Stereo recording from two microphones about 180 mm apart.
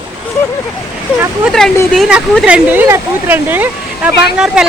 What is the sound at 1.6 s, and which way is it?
Speech, 5° left (ahead or behind).